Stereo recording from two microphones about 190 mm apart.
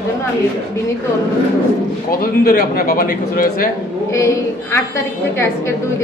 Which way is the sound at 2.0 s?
50° left (ahead or behind).